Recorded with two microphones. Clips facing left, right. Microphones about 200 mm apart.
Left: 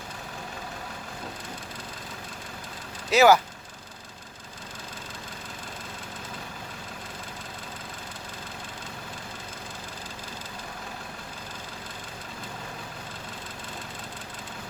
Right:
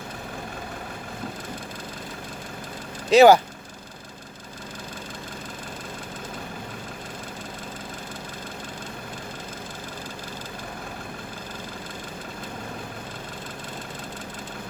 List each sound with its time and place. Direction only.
3.1 s speech: 30° right (ahead or behind)